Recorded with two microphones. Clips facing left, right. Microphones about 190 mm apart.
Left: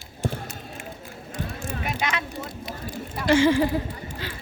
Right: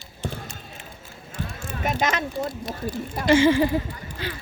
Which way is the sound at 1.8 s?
40° right (ahead or behind).